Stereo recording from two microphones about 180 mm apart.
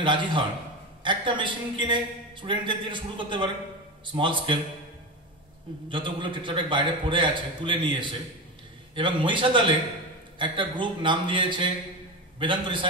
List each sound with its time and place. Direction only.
0.0 s a man's voice: 25° right (ahead or behind)
5.9 s a man's voice: 25° right (ahead or behind)